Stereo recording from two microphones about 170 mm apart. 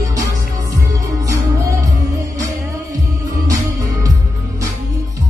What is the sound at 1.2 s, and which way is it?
Music, 20° right (ahead or behind).